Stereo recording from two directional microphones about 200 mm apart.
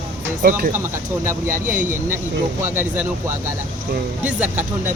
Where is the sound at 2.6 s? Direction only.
10° right (ahead or behind).